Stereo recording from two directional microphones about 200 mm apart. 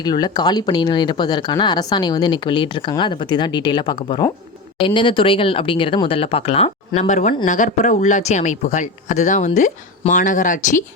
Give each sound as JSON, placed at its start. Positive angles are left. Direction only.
{"t": 0.0, "sound": "speech", "side_deg": 20}